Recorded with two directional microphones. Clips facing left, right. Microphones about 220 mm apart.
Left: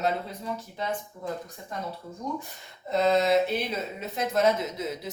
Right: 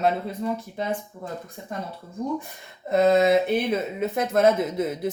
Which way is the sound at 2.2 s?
55° right (ahead or behind).